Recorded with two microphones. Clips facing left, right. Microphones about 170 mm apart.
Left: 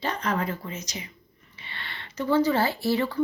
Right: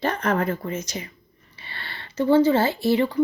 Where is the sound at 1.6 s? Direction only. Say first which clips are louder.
Right 2 dB; 35° right (ahead or behind); by 3.2 s 20° right (ahead or behind).